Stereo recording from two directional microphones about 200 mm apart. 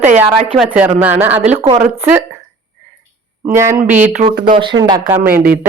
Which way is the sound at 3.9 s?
40° right (ahead or behind).